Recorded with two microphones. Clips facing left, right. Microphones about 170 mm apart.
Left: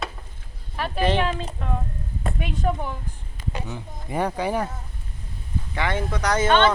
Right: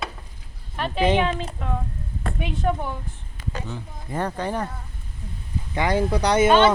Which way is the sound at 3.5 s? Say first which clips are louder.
Even; 15° left (ahead or behind).